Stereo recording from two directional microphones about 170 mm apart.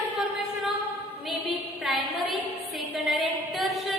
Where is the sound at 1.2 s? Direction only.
Centre (ahead or behind).